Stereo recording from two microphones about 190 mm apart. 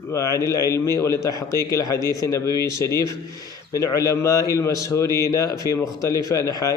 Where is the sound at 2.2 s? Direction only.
15° left (ahead or behind).